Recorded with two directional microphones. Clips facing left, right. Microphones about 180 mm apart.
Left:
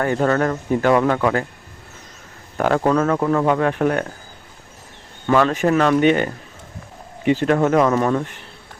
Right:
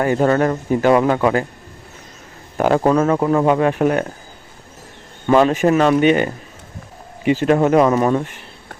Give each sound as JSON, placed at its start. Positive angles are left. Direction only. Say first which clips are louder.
{"t": 0.0, "sound": "speech", "louder": "right 3 dB", "side_deg": -15}
{"t": 2.6, "sound": "speech", "louder": "right 3 dB", "side_deg": -15}
{"t": 5.3, "sound": "speech", "louder": "right 3 dB", "side_deg": -20}
{"t": 7.4, "sound": "speech", "louder": "right 3 dB", "side_deg": -15}